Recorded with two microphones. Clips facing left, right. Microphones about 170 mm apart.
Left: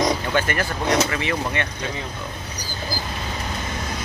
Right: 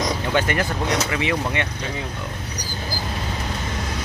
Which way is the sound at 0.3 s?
20° right (ahead or behind).